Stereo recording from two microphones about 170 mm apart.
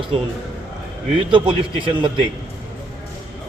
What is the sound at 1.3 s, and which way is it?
Speech, 30° right (ahead or behind).